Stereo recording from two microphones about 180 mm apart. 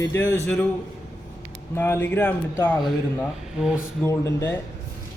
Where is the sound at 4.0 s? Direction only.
15° left (ahead or behind).